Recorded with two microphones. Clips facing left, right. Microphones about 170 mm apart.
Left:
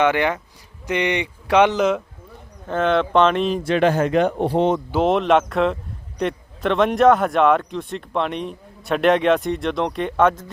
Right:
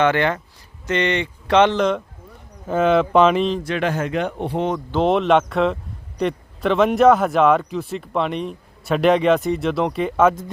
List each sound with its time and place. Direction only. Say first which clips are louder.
0.0 s speech: even; 15° left (ahead or behind)
2.6 s a man's voice: right 2 dB; 5° right (ahead or behind)
3.6 s speech: left 5 dB; 30° left (ahead or behind)
4.9 s a man's voice: even; centre (ahead or behind)